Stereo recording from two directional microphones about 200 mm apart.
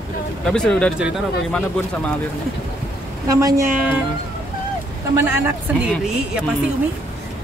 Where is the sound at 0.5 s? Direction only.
5° left (ahead or behind).